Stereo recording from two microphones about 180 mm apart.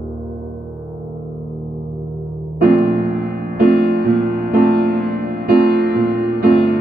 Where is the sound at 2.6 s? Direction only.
55° right (ahead or behind).